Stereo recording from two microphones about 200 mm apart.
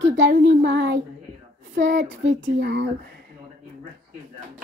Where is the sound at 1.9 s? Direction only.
65° right (ahead or behind).